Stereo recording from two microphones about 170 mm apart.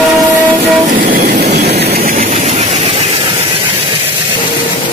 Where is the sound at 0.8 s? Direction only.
60° right (ahead or behind).